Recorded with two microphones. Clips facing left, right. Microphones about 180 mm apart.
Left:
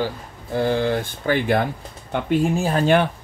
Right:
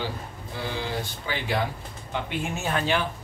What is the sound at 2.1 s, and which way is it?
Speech, 40° left (ahead or behind).